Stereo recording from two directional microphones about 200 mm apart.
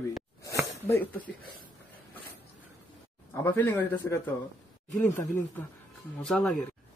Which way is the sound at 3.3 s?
10° left (ahead or behind).